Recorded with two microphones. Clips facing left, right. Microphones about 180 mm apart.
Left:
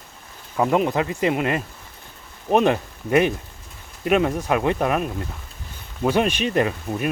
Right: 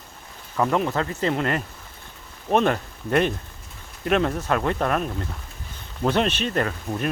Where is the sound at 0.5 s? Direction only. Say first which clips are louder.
Left 3 dB; 15° left (ahead or behind).